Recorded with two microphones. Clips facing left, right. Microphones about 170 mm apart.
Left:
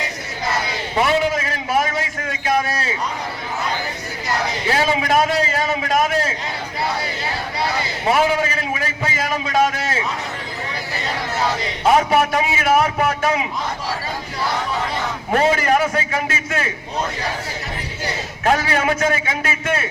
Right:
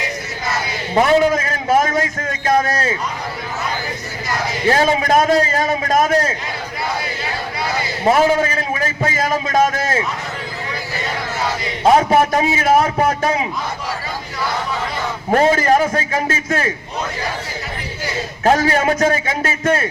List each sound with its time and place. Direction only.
0.9 s a man's voice: 45° right (ahead or behind)
4.7 s a man's voice: 45° right (ahead or behind)
8.1 s a man's voice: 45° right (ahead or behind)
11.9 s a man's voice: 40° right (ahead or behind)
15.4 s a man's voice: 40° right (ahead or behind)
18.4 s a man's voice: 40° right (ahead or behind)